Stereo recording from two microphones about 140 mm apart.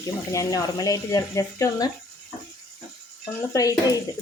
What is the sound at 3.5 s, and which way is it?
Speech, 25° left (ahead or behind).